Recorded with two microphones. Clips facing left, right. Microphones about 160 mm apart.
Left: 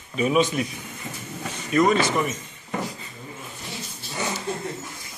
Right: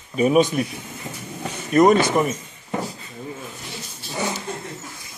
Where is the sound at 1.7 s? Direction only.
45° right (ahead or behind).